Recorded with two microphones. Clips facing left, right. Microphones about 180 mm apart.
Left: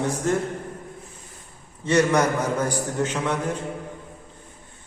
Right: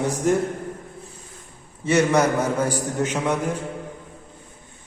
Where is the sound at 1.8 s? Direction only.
10° right (ahead or behind).